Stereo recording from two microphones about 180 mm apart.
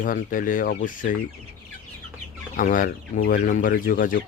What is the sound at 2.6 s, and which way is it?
Speech, 50° left (ahead or behind).